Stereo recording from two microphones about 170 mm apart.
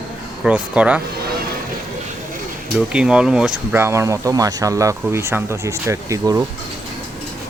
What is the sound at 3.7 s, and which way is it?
Speech, 15° right (ahead or behind).